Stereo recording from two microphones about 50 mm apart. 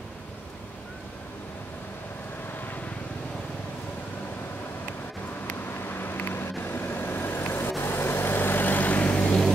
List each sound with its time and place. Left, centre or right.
5.5 s vehicle: left